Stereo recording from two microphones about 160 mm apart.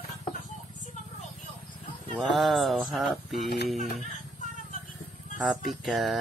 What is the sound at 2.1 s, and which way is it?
Mantra, centre (ahead or behind).